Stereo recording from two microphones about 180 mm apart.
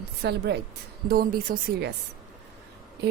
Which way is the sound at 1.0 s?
55° right (ahead or behind).